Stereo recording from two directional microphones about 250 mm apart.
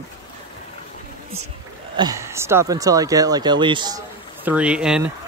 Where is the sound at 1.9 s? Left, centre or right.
Centre.